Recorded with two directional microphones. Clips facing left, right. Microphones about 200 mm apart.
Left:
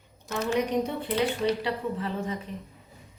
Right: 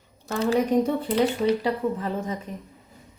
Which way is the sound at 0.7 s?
50° right (ahead or behind).